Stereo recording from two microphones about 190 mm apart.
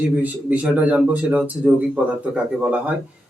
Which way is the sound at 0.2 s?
10° right (ahead or behind).